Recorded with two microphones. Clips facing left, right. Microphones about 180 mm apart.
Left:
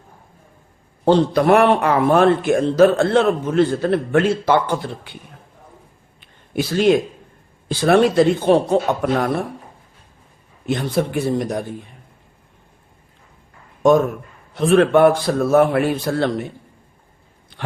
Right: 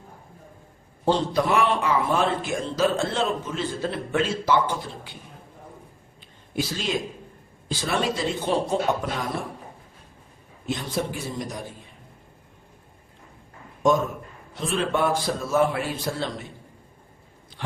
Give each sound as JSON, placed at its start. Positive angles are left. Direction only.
{"t": 1.0, "sound": "a man's voice", "side_deg": 60}
{"t": 6.1, "sound": "a sound", "side_deg": 60}
{"t": 7.7, "sound": "a man's voice", "side_deg": 60}
{"t": 10.7, "sound": "a man's voice", "side_deg": 60}
{"t": 14.5, "sound": "a man's voice", "side_deg": 60}